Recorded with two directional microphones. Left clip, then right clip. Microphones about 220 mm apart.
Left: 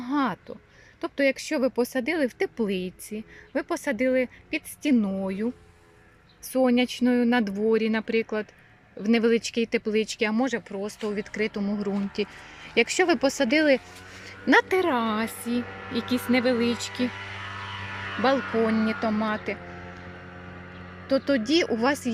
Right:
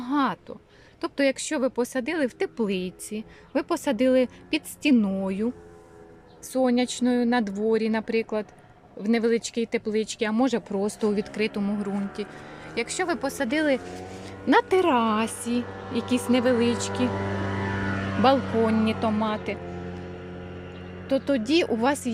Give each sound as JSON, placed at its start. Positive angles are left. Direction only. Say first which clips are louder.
{"t": 0.0, "sound": "a sound", "louder": "right 2 dB", "side_deg": 0}
{"t": 1.0, "sound": "speech", "louder": "even", "side_deg": 0}
{"t": 6.5, "sound": "speech", "louder": "left 1 dB", "side_deg": 0}
{"t": 17.1, "sound": "vehicle", "louder": "right 6 dB", "side_deg": -35}
{"t": 18.4, "sound": "speech", "louder": "right 1 dB", "side_deg": -15}
{"t": 18.9, "sound": "speech", "louder": "right 1 dB", "side_deg": 0}
{"t": 21.1, "sound": "speech", "louder": "even", "side_deg": 0}